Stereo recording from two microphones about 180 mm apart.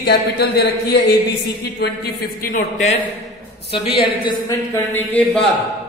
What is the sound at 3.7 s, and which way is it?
Speech, 30° left (ahead or behind).